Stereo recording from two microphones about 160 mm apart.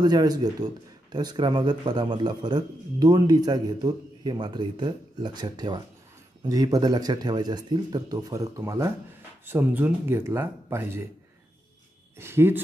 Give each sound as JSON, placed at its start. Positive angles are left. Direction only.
{"t": 0.0, "sound": "a man's voice", "side_deg": -25}
{"t": 12.2, "sound": "speech", "side_deg": -15}